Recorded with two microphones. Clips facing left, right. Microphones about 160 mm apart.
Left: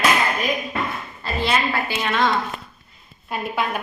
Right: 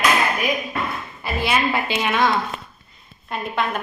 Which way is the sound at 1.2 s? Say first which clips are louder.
Right 1 dB; 10° right (ahead or behind).